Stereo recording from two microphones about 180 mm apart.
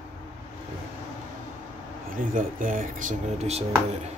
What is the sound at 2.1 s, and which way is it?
Speech, 50° right (ahead or behind).